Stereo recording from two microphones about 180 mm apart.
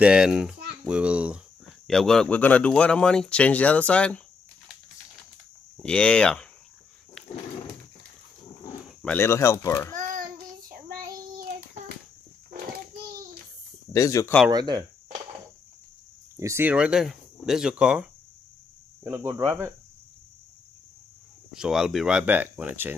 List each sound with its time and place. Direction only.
0.0 s speech: 5° right (ahead or behind)
5.8 s speech: 5° left (ahead or behind)
9.0 s speech: 10° left (ahead or behind)
9.9 s child singing: 45° right (ahead or behind)
13.9 s speech: 20° left (ahead or behind)
14.5 s speech: 20° right (ahead or behind)
16.3 s speech: 15° right (ahead or behind)
19.0 s speech: 15° right (ahead or behind)
21.5 s speech: 5° right (ahead or behind)